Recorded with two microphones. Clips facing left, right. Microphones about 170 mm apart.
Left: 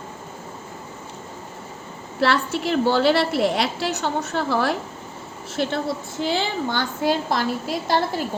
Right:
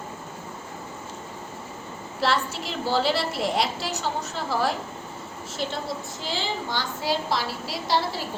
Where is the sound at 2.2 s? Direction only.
65° left (ahead or behind).